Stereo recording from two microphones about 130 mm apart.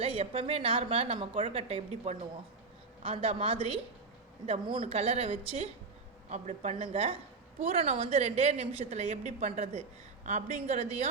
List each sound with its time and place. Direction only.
0.0 s a woman's voice: 50° right (ahead or behind)
6.3 s a woman's voice: 65° right (ahead or behind)